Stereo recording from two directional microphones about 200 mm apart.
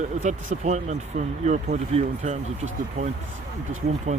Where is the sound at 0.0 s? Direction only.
35° right (ahead or behind).